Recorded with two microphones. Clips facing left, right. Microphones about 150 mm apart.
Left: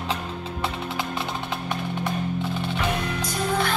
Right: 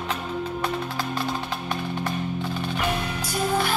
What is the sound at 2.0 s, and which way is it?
Music, 25° left (ahead or behind).